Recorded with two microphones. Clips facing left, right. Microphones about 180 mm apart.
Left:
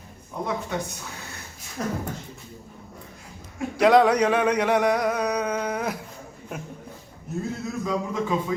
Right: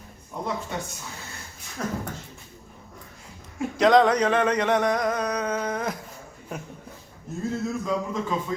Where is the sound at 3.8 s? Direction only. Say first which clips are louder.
Left 1 dB; 10° left (ahead or behind).